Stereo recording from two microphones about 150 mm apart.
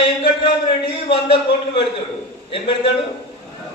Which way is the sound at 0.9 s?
35° left (ahead or behind).